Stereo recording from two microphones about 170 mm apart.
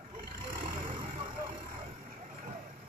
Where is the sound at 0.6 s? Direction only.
30° right (ahead or behind).